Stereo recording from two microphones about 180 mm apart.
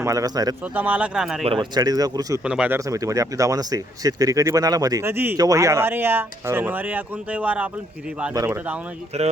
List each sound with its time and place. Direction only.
0.0 s speech: 20° right (ahead or behind)
0.6 s speech: 10° right (ahead or behind)
1.5 s speech: 25° right (ahead or behind)
2.4 s speech: 5° right (ahead or behind)
9.1 s speech: 35° right (ahead or behind)